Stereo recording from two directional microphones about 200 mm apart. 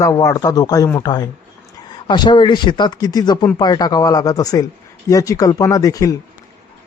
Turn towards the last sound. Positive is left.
turn(degrees=15)  # may be behind; listen again after turning